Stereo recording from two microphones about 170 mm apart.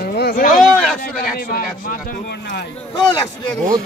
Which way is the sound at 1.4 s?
60° left (ahead or behind).